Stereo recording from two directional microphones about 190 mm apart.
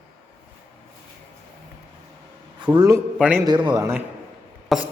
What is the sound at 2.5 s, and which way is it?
Speech, 25° right (ahead or behind).